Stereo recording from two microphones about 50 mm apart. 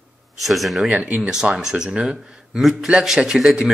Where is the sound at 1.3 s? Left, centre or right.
Centre.